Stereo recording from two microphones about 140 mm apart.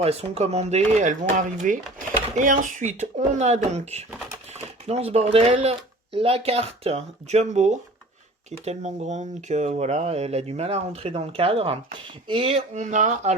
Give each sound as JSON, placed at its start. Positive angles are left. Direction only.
{"t": 0.0, "sound": "speech", "side_deg": -50}
{"t": 12.7, "sound": "speech", "side_deg": -60}